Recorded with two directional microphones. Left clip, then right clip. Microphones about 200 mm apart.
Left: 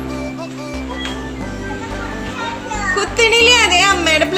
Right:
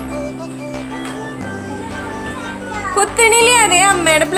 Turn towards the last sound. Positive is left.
turn(degrees=-15)  # may be behind; listen again after turning